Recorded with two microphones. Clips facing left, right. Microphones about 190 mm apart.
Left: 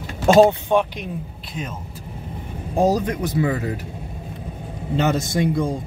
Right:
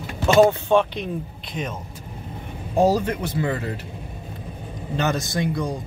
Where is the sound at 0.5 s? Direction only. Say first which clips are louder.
Even; 10° left (ahead or behind).